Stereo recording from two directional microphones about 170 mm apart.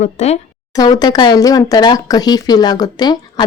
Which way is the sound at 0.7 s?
25° left (ahead or behind).